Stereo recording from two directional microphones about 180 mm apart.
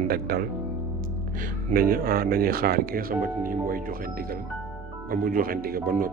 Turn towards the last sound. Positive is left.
turn(degrees=-55)  # may be behind; listen again after turning